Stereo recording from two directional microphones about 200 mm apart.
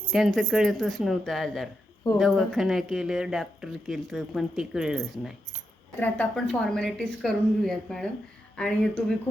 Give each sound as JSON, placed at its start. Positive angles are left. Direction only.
{"t": 0.1, "sound": "a woman's voice", "side_deg": 0}